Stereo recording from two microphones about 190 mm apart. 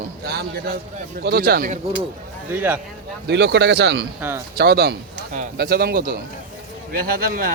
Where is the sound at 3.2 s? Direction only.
60° right (ahead or behind).